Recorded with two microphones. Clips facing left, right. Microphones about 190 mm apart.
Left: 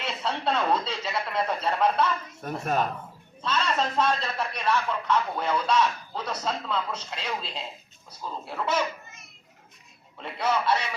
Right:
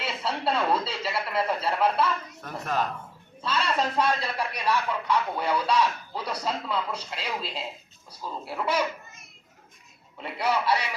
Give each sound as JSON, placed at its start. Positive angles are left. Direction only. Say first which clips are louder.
{"t": 0.0, "sound": "speech", "louder": "even", "side_deg": -5}
{"t": 2.4, "sound": "speech", "louder": "left 3 dB", "side_deg": 25}
{"t": 3.8, "sound": "speech", "louder": "right 1 dB", "side_deg": -10}
{"t": 10.2, "sound": "speech", "louder": "even", "side_deg": -10}